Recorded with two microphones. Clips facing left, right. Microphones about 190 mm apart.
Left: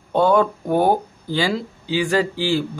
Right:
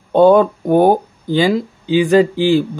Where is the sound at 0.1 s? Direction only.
20° right (ahead or behind).